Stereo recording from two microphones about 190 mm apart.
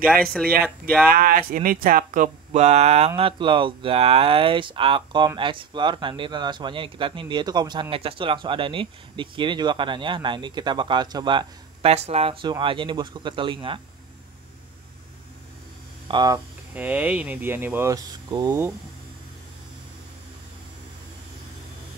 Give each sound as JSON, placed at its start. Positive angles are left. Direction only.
{"t": 0.0, "sound": "speech", "side_deg": 0}
{"t": 1.1, "sound": "speech", "side_deg": -50}
{"t": 16.1, "sound": "speech", "side_deg": -20}
{"t": 16.7, "sound": "speech", "side_deg": -10}